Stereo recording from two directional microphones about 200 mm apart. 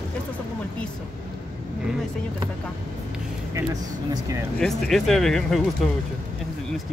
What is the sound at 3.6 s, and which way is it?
Speech, 15° right (ahead or behind).